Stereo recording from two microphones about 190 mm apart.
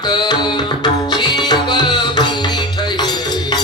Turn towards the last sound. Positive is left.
turn(degrees=20)  # may be behind; listen again after turning